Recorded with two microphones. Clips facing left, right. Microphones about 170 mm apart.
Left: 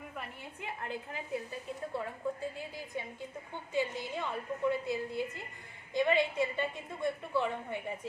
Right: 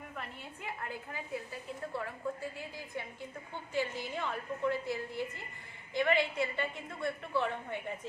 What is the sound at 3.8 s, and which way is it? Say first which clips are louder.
A woman's voice: left 1 dB; 15° left (ahead or behind).